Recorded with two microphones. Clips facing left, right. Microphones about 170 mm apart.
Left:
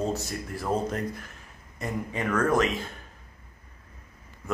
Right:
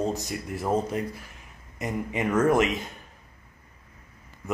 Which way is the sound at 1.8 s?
20° right (ahead or behind).